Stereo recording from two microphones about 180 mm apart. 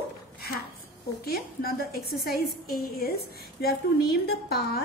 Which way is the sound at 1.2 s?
55° left (ahead or behind).